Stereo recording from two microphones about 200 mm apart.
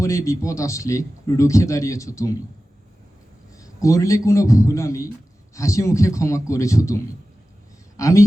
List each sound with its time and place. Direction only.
0.0 s a man's voice: 15° left (ahead or behind)
3.5 s a man's voice: 15° left (ahead or behind)